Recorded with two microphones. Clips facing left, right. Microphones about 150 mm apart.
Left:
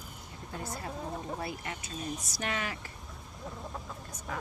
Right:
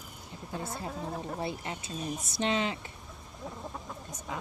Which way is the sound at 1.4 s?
25° right (ahead or behind).